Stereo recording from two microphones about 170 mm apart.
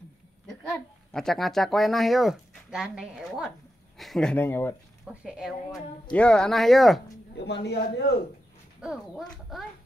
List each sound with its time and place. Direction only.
0.7 s a child's voice: centre (ahead or behind)
5.0 s a child's voice: 5° right (ahead or behind)
7.3 s a man's voice: 80° left
8.8 s a child's voice: centre (ahead or behind)